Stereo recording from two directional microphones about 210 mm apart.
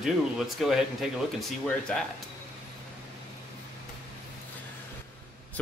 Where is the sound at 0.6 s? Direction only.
Centre (ahead or behind).